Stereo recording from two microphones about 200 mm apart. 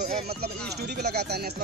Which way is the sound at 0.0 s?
50° right (ahead or behind).